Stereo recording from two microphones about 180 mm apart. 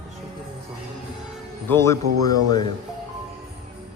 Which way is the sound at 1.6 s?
15° left (ahead or behind).